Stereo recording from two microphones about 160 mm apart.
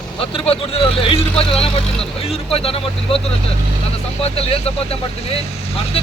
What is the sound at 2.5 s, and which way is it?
Speech, 35° left (ahead or behind).